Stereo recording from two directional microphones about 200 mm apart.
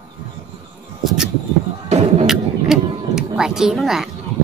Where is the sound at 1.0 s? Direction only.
Centre (ahead or behind).